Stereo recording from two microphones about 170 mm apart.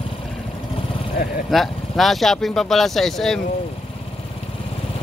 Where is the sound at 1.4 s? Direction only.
Centre (ahead or behind).